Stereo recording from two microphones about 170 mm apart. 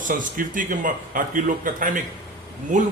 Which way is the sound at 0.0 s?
50° right (ahead or behind).